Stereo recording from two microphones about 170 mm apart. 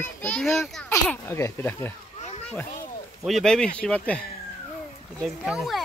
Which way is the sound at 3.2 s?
5° left (ahead or behind).